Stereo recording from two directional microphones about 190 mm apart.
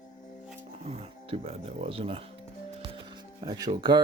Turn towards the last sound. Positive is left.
turn(degrees=-25)  # may be behind; listen again after turning